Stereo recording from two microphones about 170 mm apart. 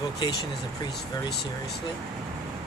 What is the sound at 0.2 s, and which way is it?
Speech, 25° left (ahead or behind).